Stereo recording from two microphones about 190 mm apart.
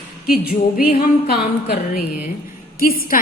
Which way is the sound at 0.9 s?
55° left (ahead or behind).